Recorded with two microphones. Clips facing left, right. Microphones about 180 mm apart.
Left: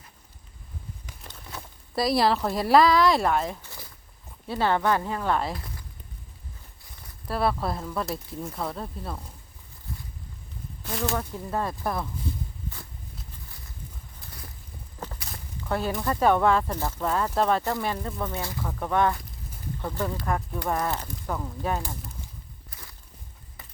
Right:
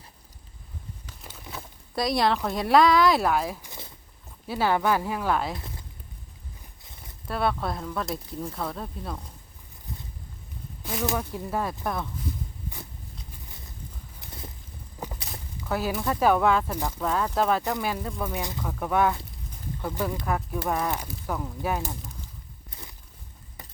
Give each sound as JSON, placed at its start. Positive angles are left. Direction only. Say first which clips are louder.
{"t": 1.2, "sound": "speech", "louder": "right 1 dB", "side_deg": -5}
{"t": 3.6, "sound": "a sound", "louder": "right 2 dB", "side_deg": -20}
{"t": 4.4, "sound": "speech", "louder": "even", "side_deg": -5}
{"t": 5.5, "sound": "a sound", "louder": "even", "side_deg": -25}
{"t": 7.3, "sound": "speech", "louder": "left 1 dB", "side_deg": 0}
{"t": 11.0, "sound": "speech", "louder": "right 1 dB", "side_deg": -15}
{"t": 14.2, "sound": "a sound", "louder": "right 4 dB", "side_deg": -20}
{"t": 15.0, "sound": "walk", "louder": "right 2 dB", "side_deg": -15}
{"t": 15.6, "sound": "speech", "louder": "even", "side_deg": -5}
{"t": 16.7, "sound": "speech", "louder": "even", "side_deg": -15}
{"t": 17.0, "sound": "speech", "louder": "even", "side_deg": 0}
{"t": 18.6, "sound": "speech", "louder": "even", "side_deg": 0}
{"t": 22.7, "sound": "a sound", "louder": "right 4 dB", "side_deg": -20}